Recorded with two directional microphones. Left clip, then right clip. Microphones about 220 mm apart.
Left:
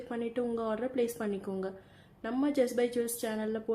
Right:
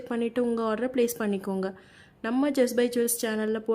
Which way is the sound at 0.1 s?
50° right (ahead or behind).